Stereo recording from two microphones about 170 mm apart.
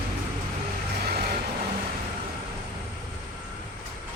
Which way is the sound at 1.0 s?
70° right (ahead or behind).